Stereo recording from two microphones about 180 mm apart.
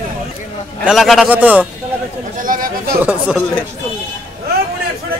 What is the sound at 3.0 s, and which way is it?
Speech, 5° right (ahead or behind).